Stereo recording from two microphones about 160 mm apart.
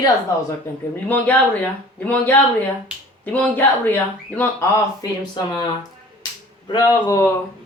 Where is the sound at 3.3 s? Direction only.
10° left (ahead or behind).